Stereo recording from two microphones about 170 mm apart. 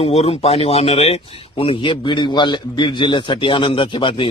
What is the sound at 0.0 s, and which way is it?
Speech, 35° left (ahead or behind).